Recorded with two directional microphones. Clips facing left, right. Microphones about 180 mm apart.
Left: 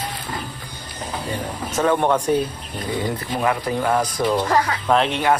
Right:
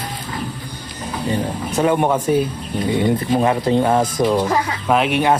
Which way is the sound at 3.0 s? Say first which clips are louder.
Right 6 dB; 25° right (ahead or behind).